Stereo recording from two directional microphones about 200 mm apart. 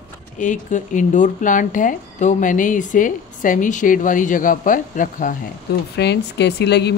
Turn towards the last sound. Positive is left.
turn(degrees=55)  # may be behind; listen again after turning